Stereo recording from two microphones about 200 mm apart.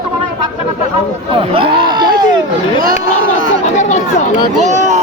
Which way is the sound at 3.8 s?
35° left (ahead or behind).